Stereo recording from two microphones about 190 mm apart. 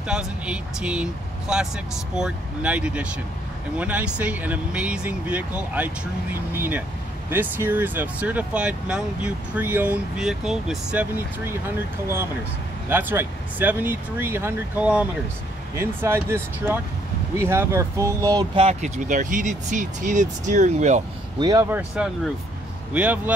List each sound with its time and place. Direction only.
0.0 s speech: 5° right (ahead or behind); by 21.0 s 40° right (ahead or behind)
21.4 s speech: 20° right (ahead or behind)